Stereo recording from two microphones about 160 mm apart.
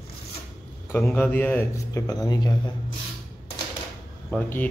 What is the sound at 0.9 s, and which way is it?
Speech, 10° left (ahead or behind).